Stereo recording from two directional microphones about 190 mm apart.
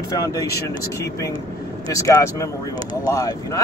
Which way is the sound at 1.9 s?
15° left (ahead or behind).